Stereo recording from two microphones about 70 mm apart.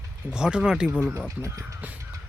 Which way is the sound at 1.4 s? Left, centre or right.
Right.